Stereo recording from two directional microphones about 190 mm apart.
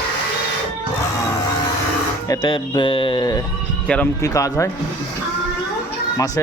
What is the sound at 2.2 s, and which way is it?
Speech, 20° left (ahead or behind).